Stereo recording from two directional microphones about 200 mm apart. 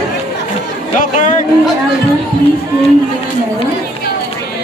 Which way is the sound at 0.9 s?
40° left (ahead or behind).